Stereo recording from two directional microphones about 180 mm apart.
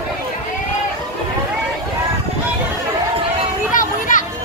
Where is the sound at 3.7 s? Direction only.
45° left (ahead or behind).